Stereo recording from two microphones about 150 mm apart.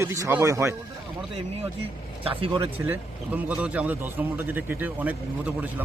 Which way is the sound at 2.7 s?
15° right (ahead or behind).